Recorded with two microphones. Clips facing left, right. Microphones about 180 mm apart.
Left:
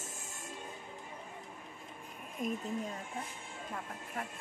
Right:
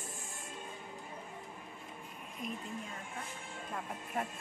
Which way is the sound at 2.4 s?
45° left (ahead or behind).